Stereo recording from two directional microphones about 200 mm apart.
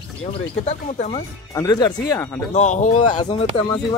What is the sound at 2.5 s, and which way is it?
Speech, 35° left (ahead or behind).